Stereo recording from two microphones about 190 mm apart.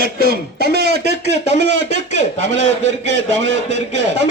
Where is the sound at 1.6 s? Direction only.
65° right (ahead or behind).